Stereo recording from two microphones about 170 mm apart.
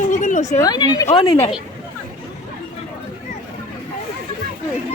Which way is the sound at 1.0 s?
35° left (ahead or behind).